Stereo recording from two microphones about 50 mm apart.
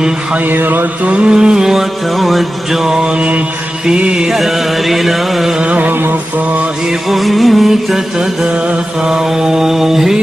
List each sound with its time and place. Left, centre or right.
0.5 s mantra: right
1.0 s mantra: right
3.8 s music: centre
4.3 s music: centre
5.6 s music: right
7.1 s music: centre
9.1 s mantra: centre